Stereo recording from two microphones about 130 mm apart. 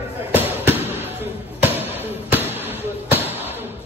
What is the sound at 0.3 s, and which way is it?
Basketball bounce, 15° right (ahead or behind).